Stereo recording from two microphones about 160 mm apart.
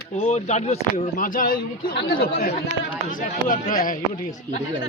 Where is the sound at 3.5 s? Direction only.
60° left (ahead or behind).